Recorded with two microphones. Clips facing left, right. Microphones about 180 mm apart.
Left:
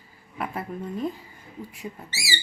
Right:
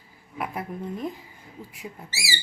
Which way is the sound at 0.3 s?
15° right (ahead or behind).